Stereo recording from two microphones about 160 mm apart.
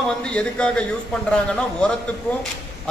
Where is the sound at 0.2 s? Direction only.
5° left (ahead or behind).